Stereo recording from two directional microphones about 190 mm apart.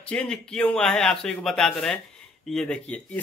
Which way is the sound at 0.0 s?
5° left (ahead or behind).